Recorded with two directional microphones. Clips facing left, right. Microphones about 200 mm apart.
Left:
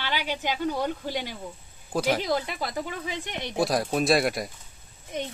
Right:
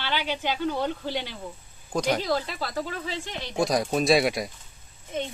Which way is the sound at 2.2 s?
15° left (ahead or behind).